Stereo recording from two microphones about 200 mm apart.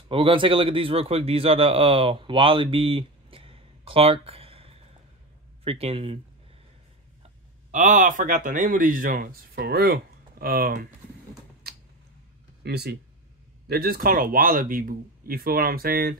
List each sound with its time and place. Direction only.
0.1 s a man's voice: 25° right (ahead or behind)
7.7 s speech: 40° right (ahead or behind)
11.6 s a sound: 50° right (ahead or behind)
12.6 s speech: 55° right (ahead or behind)